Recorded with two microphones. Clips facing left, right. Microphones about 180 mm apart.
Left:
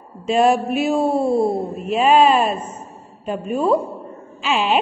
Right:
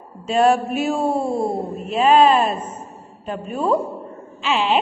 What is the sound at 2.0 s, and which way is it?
A woman's voice, 10° left (ahead or behind).